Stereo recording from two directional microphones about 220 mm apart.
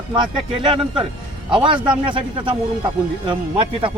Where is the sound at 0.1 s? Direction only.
20° right (ahead or behind).